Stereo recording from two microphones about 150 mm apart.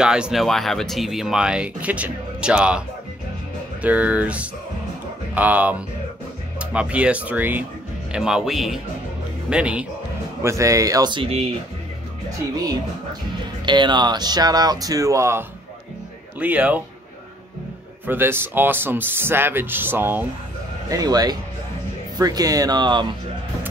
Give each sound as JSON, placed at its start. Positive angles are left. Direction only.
{"t": 0.0, "sound": "speech", "side_deg": -5}
{"t": 3.8, "sound": "speech", "side_deg": -10}
{"t": 10.4, "sound": "speech", "side_deg": -20}
{"t": 13.7, "sound": "speech", "side_deg": -30}
{"t": 18.0, "sound": "speech", "side_deg": -15}
{"t": 20.9, "sound": "speech", "side_deg": -25}